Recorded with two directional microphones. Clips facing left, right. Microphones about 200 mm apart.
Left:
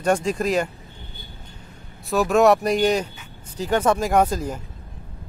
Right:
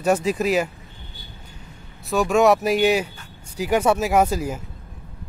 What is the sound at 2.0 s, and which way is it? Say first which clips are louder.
Speech: even; centre (ahead or behind).